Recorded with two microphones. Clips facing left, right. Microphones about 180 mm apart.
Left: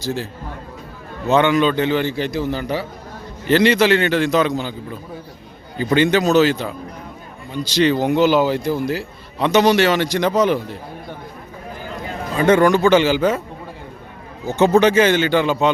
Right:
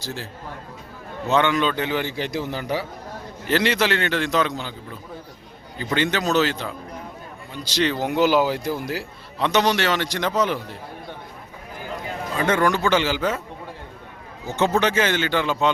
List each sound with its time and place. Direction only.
0.0 s a man's voice: 15° left (ahead or behind)
1.3 s a man's voice: 10° left (ahead or behind)
1.7 s a man's voice: 10° right (ahead or behind)
3.4 s a man's voice: centre (ahead or behind)
5.8 s a man's voice: 10° left (ahead or behind); by 9.0 s 10° right (ahead or behind)
9.4 s a man's voice: 10° left (ahead or behind)
12.5 s a man's voice: 20° left (ahead or behind)
14.5 s a man's voice: 15° left (ahead or behind)